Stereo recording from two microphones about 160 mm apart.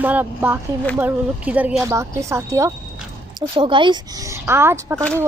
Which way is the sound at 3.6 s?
30° right (ahead or behind).